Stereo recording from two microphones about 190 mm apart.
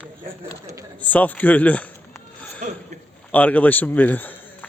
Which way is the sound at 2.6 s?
35° right (ahead or behind).